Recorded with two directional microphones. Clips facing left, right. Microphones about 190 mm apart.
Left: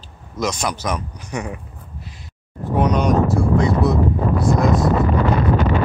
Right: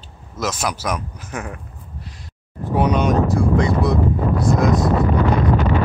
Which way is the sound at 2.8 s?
Centre (ahead or behind).